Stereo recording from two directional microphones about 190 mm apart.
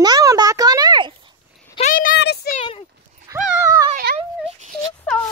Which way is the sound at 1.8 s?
45° left (ahead or behind).